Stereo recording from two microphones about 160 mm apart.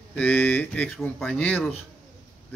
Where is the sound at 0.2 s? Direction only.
10° left (ahead or behind).